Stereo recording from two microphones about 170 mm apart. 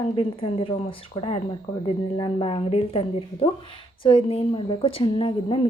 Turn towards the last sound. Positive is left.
turn(degrees=30)  # may be behind; listen again after turning